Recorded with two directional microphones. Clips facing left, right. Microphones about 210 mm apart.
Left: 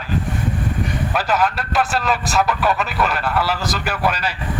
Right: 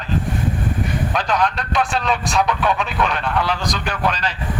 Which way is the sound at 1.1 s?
5° left (ahead or behind).